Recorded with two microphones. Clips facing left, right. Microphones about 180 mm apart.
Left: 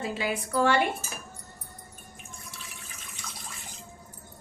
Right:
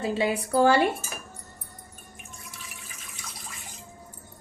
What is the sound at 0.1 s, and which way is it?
Cutlery, 30° right (ahead or behind).